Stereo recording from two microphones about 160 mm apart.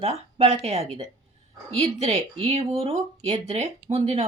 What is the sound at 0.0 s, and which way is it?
A woman's voice, 40° right (ahead or behind).